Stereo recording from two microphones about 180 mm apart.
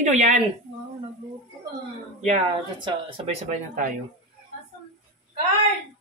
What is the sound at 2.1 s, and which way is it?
Speech, 40° right (ahead or behind).